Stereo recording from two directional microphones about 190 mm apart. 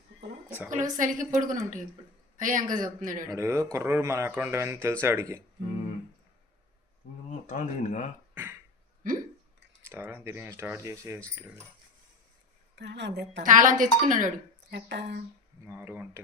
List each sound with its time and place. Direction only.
0.4 s a sound: 10° right (ahead or behind)
0.7 s a woman's voice: 45° right (ahead or behind)
3.2 s speech: 15° right (ahead or behind)
7.3 s speech: 40° left (ahead or behind)
9.9 s speech: 10° right (ahead or behind)
12.7 s a woman's voice: 65° right (ahead or behind)
13.4 s a woman's voice: 45° right (ahead or behind)
14.7 s a woman's voice: 65° right (ahead or behind)
15.6 s speech: 10° right (ahead or behind)